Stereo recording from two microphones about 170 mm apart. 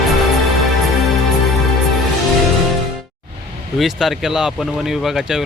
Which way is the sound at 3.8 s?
Centre (ahead or behind).